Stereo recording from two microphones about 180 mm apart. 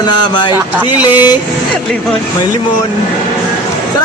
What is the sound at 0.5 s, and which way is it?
Speech, 10° right (ahead or behind).